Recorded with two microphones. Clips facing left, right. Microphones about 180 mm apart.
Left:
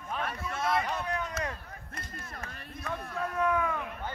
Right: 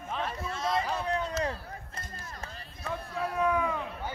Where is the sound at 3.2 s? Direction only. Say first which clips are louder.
Right 1 dB; 10° right (ahead or behind).